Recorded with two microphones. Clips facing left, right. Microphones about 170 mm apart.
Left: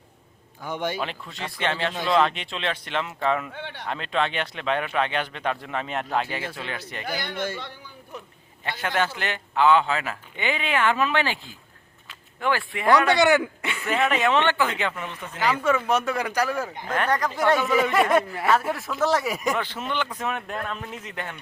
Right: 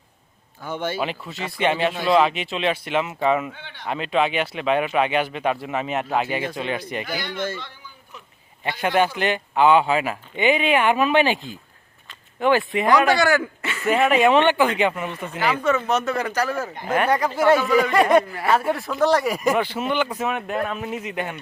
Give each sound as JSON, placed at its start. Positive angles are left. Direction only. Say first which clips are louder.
{"t": 0.6, "sound": "a man's voice", "louder": "right 1 dB", "side_deg": 15}
{"t": 0.9, "sound": "speech", "louder": "right 4 dB", "side_deg": -5}
{"t": 3.5, "sound": "speech", "louder": "left 5 dB", "side_deg": 60}
{"t": 3.8, "sound": "speech", "louder": "right 5 dB", "side_deg": -10}
{"t": 7.3, "sound": "a man's voice", "louder": "right 3 dB", "side_deg": 10}
{"t": 8.6, "sound": "speech", "louder": "right 6 dB", "side_deg": -15}
{"t": 13.1, "sound": "speech", "louder": "even", "side_deg": 20}
{"t": 13.8, "sound": "speech", "louder": "right 6 dB", "side_deg": -15}
{"t": 15.9, "sound": "a man's voice", "louder": "right 2 dB", "side_deg": 10}
{"t": 16.6, "sound": "speech", "louder": "right 4 dB", "side_deg": -10}
{"t": 19.5, "sound": "speech", "louder": "right 6 dB", "side_deg": -10}